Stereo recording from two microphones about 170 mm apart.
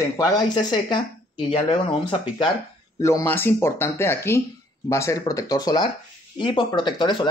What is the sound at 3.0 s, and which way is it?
Speech, 15° left (ahead or behind).